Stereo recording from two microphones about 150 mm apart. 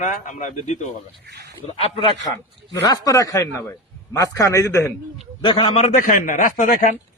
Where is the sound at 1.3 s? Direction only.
90° right.